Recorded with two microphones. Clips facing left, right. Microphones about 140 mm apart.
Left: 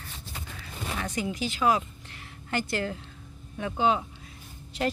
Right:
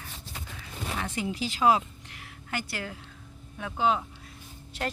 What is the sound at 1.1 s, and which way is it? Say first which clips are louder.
Speech: left 1 dB; 25° right (ahead or behind).